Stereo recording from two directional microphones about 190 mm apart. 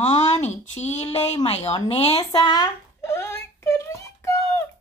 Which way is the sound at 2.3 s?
20° left (ahead or behind).